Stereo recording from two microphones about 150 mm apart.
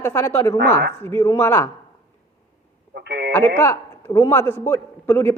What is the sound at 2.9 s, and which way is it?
Speech, 90° right.